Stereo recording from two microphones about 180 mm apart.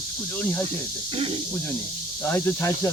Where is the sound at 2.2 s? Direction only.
10° left (ahead or behind).